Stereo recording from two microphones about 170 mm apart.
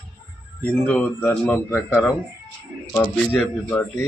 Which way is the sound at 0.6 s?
10° left (ahead or behind).